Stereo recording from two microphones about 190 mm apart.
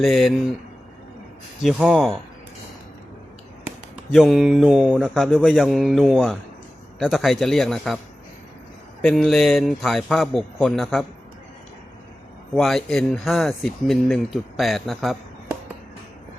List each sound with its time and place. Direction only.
0.0 s speech: centre (ahead or behind)
1.6 s speech: centre (ahead or behind)
4.1 s speech: centre (ahead or behind)
9.0 s speech: centre (ahead or behind)
12.5 s speech: centre (ahead or behind)